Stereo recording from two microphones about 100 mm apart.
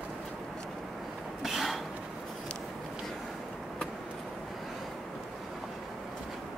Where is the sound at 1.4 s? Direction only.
Centre (ahead or behind).